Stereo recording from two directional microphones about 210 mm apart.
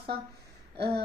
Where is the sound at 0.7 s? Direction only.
50° right (ahead or behind).